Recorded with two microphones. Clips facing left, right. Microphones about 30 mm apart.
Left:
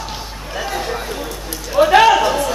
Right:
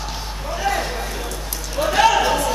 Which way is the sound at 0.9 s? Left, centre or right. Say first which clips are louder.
Left 3 dB; centre.